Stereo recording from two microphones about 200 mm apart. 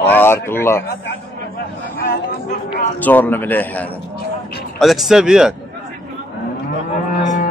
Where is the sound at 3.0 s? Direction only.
10° left (ahead or behind).